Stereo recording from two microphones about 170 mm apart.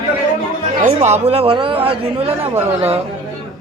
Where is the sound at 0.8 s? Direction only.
40° right (ahead or behind).